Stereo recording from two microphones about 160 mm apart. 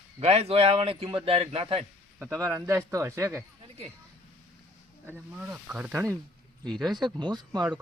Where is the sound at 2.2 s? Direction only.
15° right (ahead or behind).